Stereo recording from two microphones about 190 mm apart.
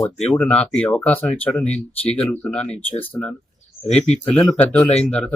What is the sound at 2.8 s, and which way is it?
Speech, 30° left (ahead or behind).